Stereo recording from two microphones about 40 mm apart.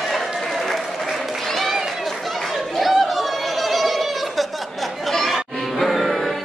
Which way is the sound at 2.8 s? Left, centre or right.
Centre.